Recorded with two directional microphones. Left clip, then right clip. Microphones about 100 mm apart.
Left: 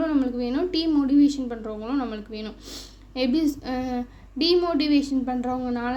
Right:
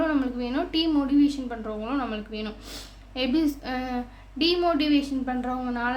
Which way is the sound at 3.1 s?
40° left (ahead or behind).